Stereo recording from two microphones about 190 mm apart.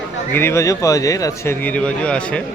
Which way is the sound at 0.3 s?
15° left (ahead or behind).